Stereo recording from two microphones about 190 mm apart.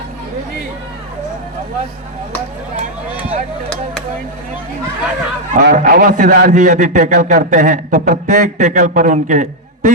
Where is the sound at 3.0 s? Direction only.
10° right (ahead or behind).